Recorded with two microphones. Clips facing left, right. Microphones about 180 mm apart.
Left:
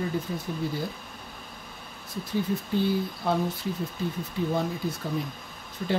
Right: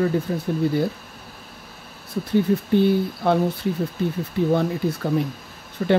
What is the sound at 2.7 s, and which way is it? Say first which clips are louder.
Speech: right 7 dB; 65° right (ahead or behind).